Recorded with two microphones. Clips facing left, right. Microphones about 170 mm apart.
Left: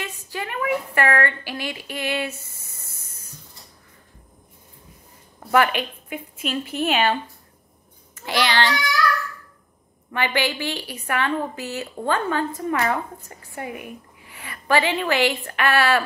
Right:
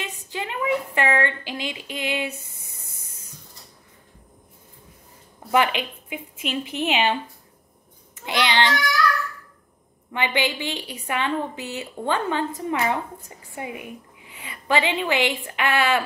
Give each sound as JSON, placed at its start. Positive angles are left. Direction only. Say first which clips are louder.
{"t": 0.0, "sound": "a woman's voice", "louder": "even", "side_deg": -20}
{"t": 5.5, "sound": "a woman's voice", "louder": "left 2 dB", "side_deg": -15}
{"t": 10.1, "sound": "a woman's voice", "louder": "left 1 dB", "side_deg": -20}